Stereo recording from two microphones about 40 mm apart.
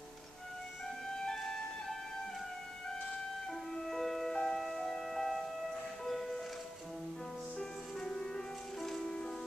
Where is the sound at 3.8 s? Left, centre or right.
Centre.